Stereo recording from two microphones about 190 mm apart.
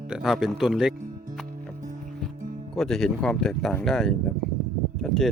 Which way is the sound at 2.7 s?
Centre (ahead or behind).